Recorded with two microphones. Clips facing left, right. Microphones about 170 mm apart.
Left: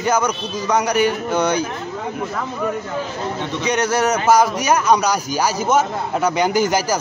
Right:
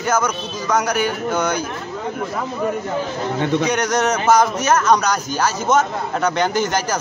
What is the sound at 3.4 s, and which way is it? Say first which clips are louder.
Speech: right 6 dB; 55° right (ahead or behind).